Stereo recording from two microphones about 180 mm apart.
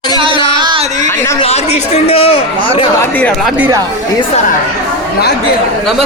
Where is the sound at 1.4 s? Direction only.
35° left (ahead or behind).